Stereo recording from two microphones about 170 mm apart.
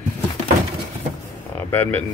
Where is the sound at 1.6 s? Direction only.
10° left (ahead or behind).